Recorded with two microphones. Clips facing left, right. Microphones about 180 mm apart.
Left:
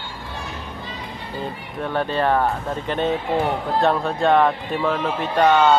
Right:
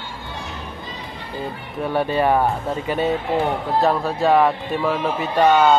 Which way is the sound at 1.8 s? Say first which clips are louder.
Right 2 dB; 10° right (ahead or behind).